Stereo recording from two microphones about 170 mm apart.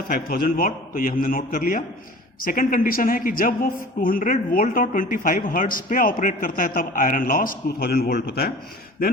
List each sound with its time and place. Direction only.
0.1 s a woman's voice: 60° left (ahead or behind)